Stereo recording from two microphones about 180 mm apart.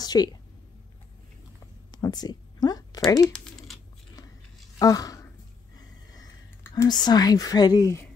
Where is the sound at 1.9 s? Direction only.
20° left (ahead or behind).